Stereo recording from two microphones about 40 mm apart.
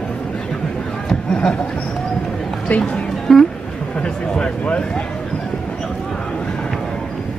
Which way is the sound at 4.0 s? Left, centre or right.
Left.